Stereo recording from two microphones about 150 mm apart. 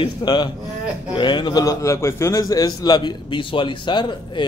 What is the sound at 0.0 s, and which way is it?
A man's voice, 30° left (ahead or behind).